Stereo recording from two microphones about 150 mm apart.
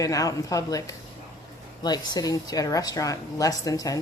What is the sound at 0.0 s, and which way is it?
A woman's voice, 20° left (ahead or behind).